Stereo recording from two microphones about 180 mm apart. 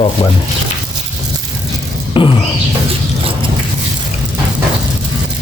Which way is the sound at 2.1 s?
30° left (ahead or behind).